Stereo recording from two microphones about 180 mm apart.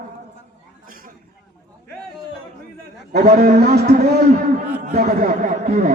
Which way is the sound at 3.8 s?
45° right (ahead or behind).